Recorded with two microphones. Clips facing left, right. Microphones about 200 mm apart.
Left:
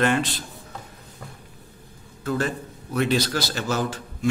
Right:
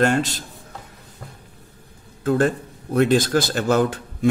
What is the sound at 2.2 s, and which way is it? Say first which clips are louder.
Speech: right 7 dB; 50° right (ahead or behind).